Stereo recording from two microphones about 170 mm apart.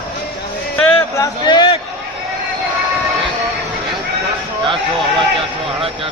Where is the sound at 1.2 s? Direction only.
25° left (ahead or behind).